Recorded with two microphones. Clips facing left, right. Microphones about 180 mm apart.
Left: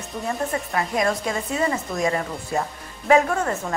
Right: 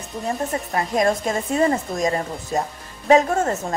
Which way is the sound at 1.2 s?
45° right (ahead or behind).